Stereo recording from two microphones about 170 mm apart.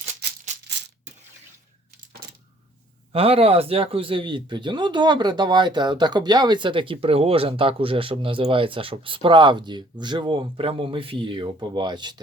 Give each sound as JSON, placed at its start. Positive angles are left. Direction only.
{"t": 3.1, "sound": "speech", "side_deg": -35}